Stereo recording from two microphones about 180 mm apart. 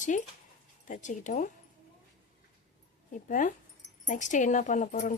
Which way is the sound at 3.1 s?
45° left (ahead or behind).